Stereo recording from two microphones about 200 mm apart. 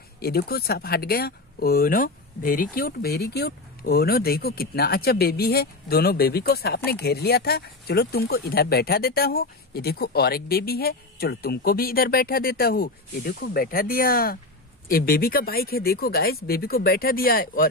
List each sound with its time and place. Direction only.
0.2 s speech: 50° left (ahead or behind)